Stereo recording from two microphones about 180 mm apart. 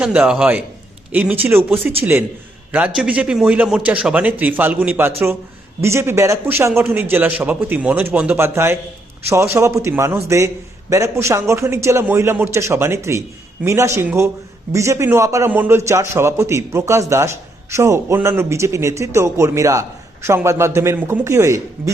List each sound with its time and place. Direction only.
0.0 s a man's voice: 5° right (ahead or behind)